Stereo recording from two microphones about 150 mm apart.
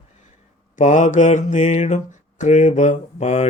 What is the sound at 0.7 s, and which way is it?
Mantra, 55° left (ahead or behind).